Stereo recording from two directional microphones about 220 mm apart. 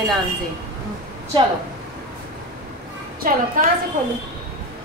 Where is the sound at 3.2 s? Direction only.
40° right (ahead or behind).